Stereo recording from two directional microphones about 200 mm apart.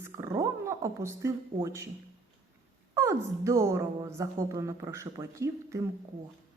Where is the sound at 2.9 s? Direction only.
15° right (ahead or behind).